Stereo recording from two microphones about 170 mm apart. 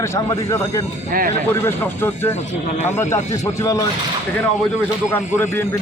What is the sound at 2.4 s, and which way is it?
Speech, 40° left (ahead or behind).